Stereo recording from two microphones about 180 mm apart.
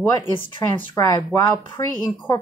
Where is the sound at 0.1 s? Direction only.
25° left (ahead or behind).